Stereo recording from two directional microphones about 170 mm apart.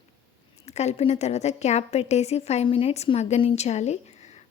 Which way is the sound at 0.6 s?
40° left (ahead or behind).